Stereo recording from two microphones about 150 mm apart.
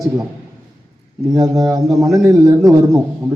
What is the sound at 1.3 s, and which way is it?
Speech, 25° right (ahead or behind).